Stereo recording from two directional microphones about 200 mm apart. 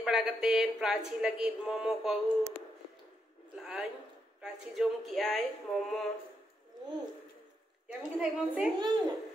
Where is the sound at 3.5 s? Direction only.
5° right (ahead or behind).